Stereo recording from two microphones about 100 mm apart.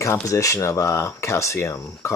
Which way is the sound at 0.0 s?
30° left (ahead or behind).